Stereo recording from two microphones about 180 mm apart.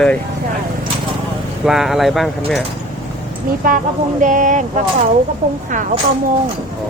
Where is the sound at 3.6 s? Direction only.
50° right (ahead or behind).